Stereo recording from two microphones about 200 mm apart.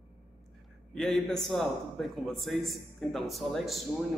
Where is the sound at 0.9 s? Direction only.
Centre (ahead or behind).